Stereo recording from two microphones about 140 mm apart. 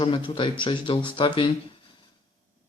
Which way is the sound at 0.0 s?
35° left (ahead or behind).